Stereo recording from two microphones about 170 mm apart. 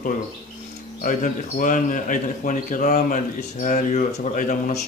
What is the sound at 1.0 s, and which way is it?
Speech, 50° left (ahead or behind).